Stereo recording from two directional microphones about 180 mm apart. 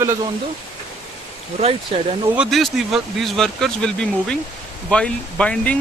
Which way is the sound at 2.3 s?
Centre (ahead or behind).